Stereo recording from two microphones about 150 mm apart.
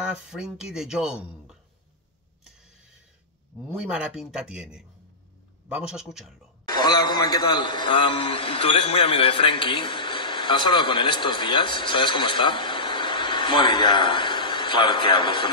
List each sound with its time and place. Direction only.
0.0 s speech: 5° right (ahead or behind)
3.7 s speech: 5° right (ahead or behind)
6.8 s a man's voice: 25° left (ahead or behind)